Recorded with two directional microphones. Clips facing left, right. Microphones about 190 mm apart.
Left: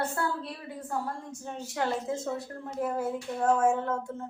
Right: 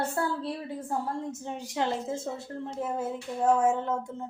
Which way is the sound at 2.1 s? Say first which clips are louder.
Left 1 dB; 25° right (ahead or behind).